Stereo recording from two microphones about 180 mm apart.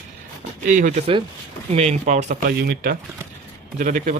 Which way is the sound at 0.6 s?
45° right (ahead or behind).